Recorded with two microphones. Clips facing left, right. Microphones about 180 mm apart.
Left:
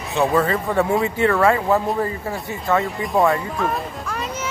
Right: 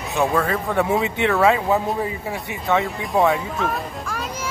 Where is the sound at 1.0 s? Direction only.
80° right.